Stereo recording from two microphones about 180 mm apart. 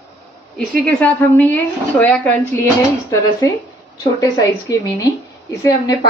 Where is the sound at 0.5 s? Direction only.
5° left (ahead or behind).